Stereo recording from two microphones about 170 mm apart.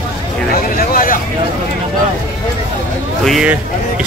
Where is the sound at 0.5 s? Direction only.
60° left (ahead or behind).